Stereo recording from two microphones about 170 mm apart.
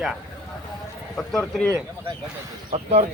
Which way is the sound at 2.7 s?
40° right (ahead or behind).